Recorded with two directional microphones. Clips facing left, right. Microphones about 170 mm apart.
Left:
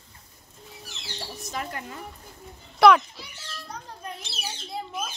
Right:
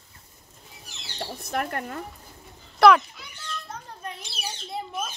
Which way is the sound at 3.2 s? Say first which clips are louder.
Left 2 dB; 30° left (ahead or behind).